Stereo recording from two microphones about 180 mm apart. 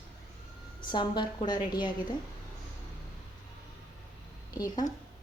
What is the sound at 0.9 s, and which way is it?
Speech, 25° left (ahead or behind).